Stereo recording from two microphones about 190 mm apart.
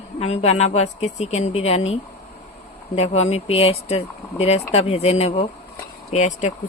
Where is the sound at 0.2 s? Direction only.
35° left (ahead or behind).